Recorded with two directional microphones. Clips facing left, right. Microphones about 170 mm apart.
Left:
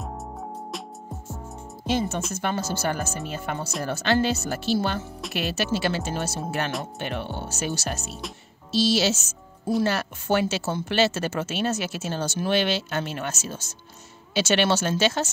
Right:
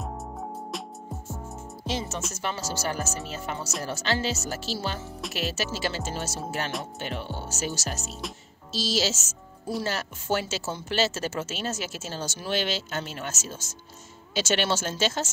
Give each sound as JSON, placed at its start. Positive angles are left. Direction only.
{"t": 0.0, "sound": "music", "side_deg": 0}
{"t": 1.9, "sound": "speech", "side_deg": 55}